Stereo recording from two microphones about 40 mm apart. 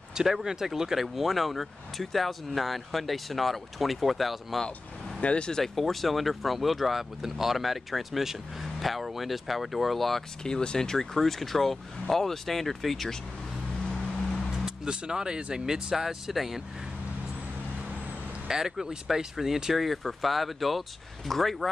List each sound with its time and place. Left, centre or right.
0.1 s speech: centre
5.2 s speech: left
5.5 s speech: centre
10.4 s speech: centre
14.9 s speech: centre
18.5 s speech: centre